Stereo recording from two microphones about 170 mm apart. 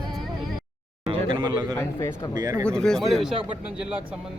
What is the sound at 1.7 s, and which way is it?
Speech, 15° left (ahead or behind).